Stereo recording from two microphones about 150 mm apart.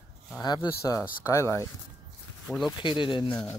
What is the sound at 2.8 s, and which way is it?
Speech, 30° left (ahead or behind).